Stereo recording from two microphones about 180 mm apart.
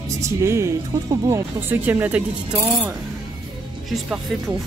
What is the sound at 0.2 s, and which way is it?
Speech, 15° right (ahead or behind).